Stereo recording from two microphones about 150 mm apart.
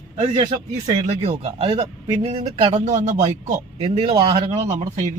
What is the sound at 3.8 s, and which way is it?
Speech, 40° right (ahead or behind).